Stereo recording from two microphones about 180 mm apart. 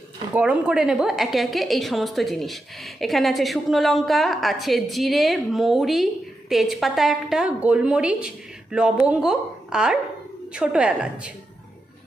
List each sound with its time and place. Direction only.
0.3 s a woman's voice: 5° right (ahead or behind)